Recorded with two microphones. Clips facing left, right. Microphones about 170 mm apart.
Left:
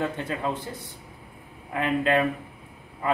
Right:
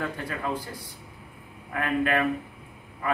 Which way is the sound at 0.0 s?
25° left (ahead or behind).